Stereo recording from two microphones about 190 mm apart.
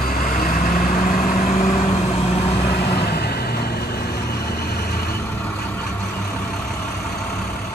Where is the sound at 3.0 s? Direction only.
55° left (ahead or behind).